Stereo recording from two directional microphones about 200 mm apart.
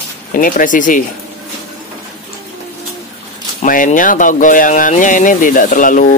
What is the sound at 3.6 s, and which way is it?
Speech, 40° left (ahead or behind).